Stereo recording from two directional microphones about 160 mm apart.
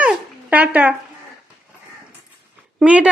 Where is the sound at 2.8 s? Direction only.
10° right (ahead or behind).